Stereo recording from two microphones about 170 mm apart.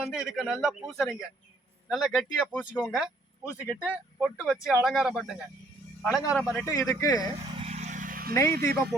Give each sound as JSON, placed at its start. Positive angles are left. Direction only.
{"t": 0.0, "sound": "a man's voice", "side_deg": -5}
{"t": 6.7, "sound": "a man's voice", "side_deg": 15}
{"t": 7.6, "sound": "vehicle", "side_deg": -40}
{"t": 8.3, "sound": "a man's voice", "side_deg": 20}